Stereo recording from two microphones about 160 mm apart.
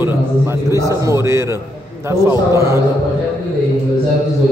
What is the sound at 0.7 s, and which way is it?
A man's voice, 20° right (ahead or behind).